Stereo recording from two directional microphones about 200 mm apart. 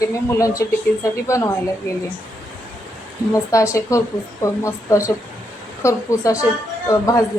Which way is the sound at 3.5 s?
15° left (ahead or behind).